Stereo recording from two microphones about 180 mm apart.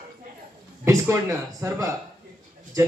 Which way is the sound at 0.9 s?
15° right (ahead or behind).